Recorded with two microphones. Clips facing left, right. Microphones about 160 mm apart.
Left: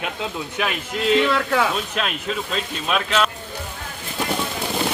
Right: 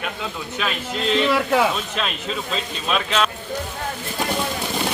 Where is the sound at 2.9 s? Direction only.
5° left (ahead or behind).